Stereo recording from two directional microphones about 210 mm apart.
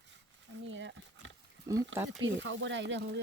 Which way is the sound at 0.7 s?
60° right (ahead or behind).